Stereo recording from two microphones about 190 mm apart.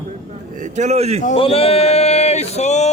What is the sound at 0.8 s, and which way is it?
Speech, 35° right (ahead or behind).